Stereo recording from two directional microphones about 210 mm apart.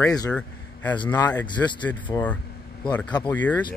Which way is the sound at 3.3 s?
5° left (ahead or behind).